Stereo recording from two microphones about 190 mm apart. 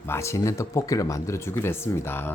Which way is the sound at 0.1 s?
15° left (ahead or behind).